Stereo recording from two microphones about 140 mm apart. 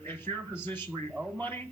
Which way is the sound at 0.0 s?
15° left (ahead or behind).